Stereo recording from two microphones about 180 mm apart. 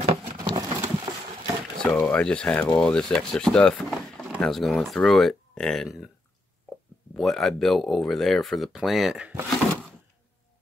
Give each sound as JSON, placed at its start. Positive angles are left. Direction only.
{"t": 0.4, "sound": "a sound", "side_deg": -20}
{"t": 1.8, "sound": "speech", "side_deg": 5}
{"t": 7.2, "sound": "speech", "side_deg": 0}